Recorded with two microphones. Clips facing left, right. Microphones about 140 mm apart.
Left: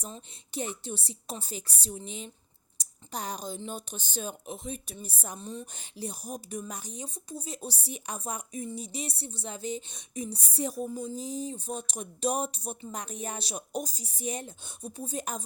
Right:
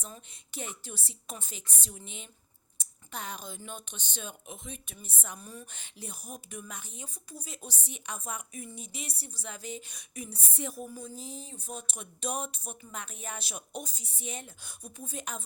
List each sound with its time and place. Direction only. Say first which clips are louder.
0.1 s a woman's voice: left 6 dB; 30° left (ahead or behind)
5.4 s a woman's voice: left 7 dB; 25° left (ahead or behind)
5.7 s a woman's voice: left 7 dB; 35° left (ahead or behind)
10.8 s a woman's voice: left 7 dB; 20° left (ahead or behind); by 14.5 s 40° left (ahead or behind)
14.6 s a woman's voice: left 6 dB; 30° left (ahead or behind)